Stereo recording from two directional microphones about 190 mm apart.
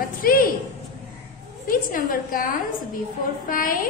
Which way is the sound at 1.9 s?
45° left (ahead or behind).